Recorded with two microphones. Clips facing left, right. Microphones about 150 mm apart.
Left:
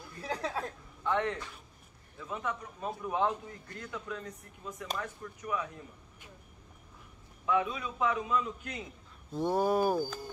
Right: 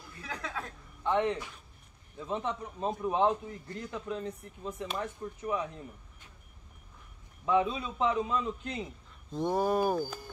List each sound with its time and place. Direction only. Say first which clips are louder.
0.2 s speech: left 4 dB; 35° left (ahead or behind)
1.0 s a man's voice: right 3 dB; 20° right (ahead or behind)
7.4 s a man's voice: right 3 dB; 25° right (ahead or behind)
9.3 s speech: even; 10° left (ahead or behind)